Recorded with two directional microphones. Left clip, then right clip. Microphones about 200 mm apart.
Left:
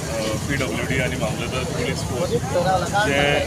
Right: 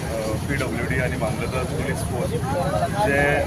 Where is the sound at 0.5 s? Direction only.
Centre (ahead or behind).